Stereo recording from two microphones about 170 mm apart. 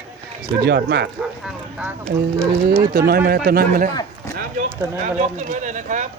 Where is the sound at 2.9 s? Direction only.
65° right (ahead or behind).